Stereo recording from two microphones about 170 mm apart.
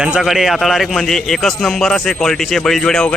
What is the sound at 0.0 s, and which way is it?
Speech, 5° right (ahead or behind).